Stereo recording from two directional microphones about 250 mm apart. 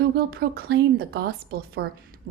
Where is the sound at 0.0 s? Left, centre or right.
Right.